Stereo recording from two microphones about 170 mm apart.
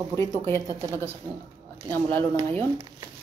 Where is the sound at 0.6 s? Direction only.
20° right (ahead or behind).